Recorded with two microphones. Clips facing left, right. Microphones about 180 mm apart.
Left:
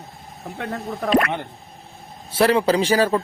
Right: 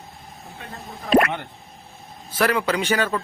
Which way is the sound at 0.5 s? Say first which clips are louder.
Left 11 dB; 70° left (ahead or behind).